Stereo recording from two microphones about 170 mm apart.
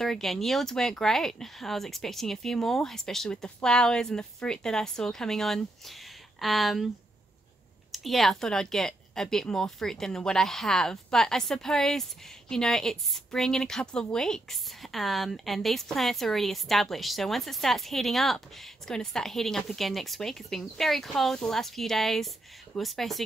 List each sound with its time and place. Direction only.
0.0 s speech: centre (ahead or behind)
7.9 s speech: centre (ahead or behind)